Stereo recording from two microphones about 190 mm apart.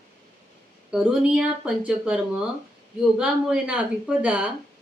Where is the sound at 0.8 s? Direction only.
5° right (ahead or behind).